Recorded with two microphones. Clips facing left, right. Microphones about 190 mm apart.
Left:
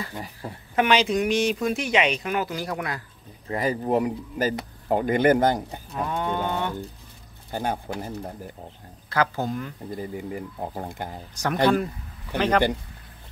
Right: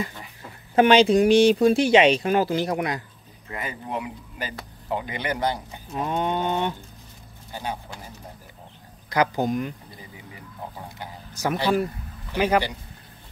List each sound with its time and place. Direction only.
0.7 s speech: 30° right (ahead or behind)
3.4 s speech: 35° left (ahead or behind)
5.9 s livestock: 20° right (ahead or behind)
7.5 s speech: 50° left (ahead or behind)
9.1 s speech: 15° right (ahead or behind)
9.8 s speech: 50° left (ahead or behind)
12.4 s speech: 10° right (ahead or behind)